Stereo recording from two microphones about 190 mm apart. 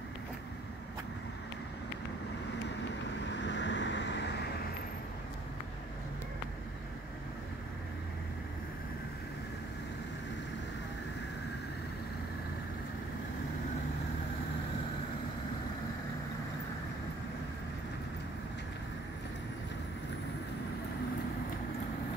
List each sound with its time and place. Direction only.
3.3 s vehicle: 70° left (ahead or behind)